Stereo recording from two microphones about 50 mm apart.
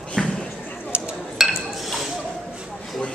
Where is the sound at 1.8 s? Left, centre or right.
Centre.